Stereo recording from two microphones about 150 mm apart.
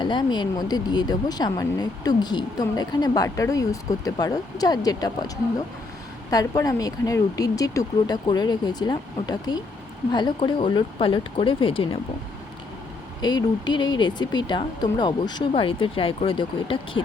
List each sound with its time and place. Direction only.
0.0 s speech: 30° left (ahead or behind)
6.3 s speech: 25° left (ahead or behind)
13.2 s speech: 30° left (ahead or behind)